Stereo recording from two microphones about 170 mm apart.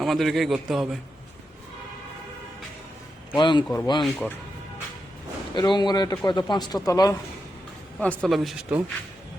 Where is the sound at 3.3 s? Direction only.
25° left (ahead or behind).